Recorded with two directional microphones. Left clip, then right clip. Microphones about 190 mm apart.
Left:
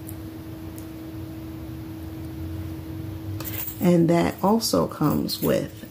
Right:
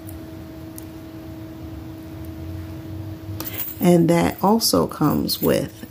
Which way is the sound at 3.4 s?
35° right (ahead or behind).